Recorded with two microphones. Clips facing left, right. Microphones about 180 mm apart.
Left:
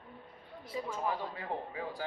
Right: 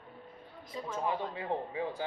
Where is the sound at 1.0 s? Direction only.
20° right (ahead or behind).